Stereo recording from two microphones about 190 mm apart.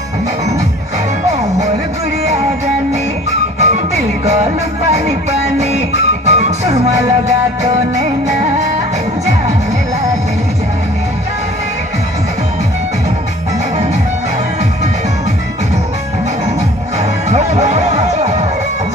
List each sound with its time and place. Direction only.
3.5 s music: 35° right (ahead or behind)
5.6 s music: 35° right (ahead or behind)
17.3 s music: 35° right (ahead or behind)